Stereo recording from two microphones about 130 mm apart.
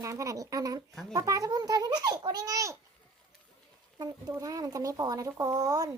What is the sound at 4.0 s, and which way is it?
Speech, 30° right (ahead or behind).